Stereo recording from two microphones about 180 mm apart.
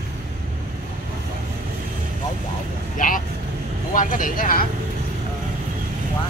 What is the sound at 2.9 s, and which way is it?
Vehicle, 45° left (ahead or behind).